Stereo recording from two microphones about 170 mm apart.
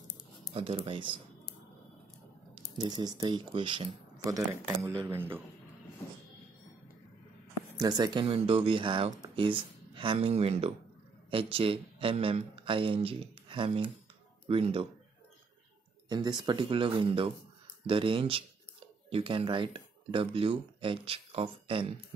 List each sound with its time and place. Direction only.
0.5 s speech: 35° right (ahead or behind)
2.8 s speech: 25° right (ahead or behind)
7.8 s speech: 25° right (ahead or behind)
16.1 s speech: 25° right (ahead or behind)